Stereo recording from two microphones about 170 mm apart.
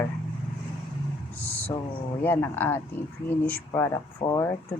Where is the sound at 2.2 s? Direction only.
15° left (ahead or behind).